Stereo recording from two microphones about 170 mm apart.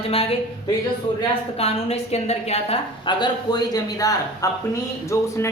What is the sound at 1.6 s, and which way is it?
A woman's voice, 35° left (ahead or behind).